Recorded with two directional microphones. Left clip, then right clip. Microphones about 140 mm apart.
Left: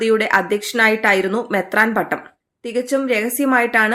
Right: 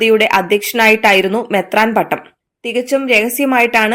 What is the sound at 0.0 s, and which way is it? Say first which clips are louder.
A woman's voice: right 5 dB; 15° right (ahead or behind).